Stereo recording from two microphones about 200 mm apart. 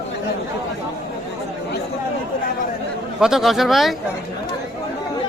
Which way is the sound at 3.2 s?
Centre (ahead or behind).